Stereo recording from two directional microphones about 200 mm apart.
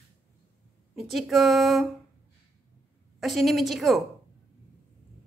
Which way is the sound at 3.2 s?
Centre (ahead or behind).